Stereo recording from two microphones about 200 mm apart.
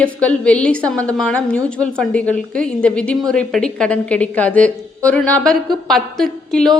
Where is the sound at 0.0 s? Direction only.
5° left (ahead or behind).